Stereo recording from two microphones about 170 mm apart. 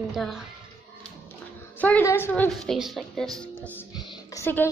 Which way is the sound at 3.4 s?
10° left (ahead or behind).